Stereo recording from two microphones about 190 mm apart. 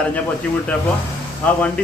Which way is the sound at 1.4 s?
5° left (ahead or behind).